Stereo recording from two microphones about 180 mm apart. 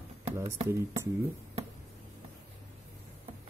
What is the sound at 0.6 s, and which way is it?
Speech, 15° right (ahead or behind).